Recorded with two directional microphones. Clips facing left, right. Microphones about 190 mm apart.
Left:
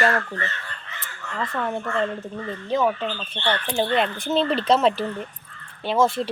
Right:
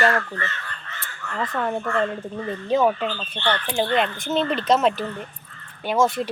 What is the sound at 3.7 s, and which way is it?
Speech, 5° left (ahead or behind).